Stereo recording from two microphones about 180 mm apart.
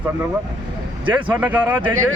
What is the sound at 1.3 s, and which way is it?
Speech, 10° right (ahead or behind).